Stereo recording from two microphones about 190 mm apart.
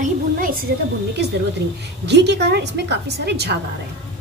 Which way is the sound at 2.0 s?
65° right (ahead or behind).